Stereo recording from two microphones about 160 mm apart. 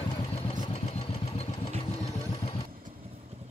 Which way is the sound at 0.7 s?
40° left (ahead or behind).